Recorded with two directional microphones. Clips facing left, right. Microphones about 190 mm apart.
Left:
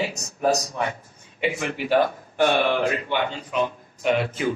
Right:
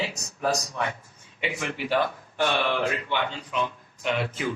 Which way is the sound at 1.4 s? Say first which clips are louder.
Left 5 dB; 45° left (ahead or behind).